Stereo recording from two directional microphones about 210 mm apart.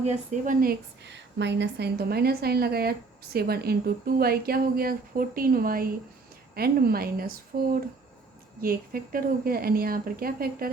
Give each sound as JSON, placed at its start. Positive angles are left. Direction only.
{"t": 0.0, "sound": "a woman's voice", "side_deg": -35}